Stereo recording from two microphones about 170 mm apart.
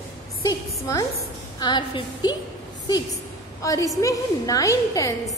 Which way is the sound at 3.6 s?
20° left (ahead or behind).